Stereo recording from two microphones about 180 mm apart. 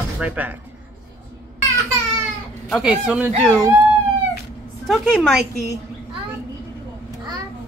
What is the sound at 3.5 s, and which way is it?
Speech, 15° right (ahead or behind).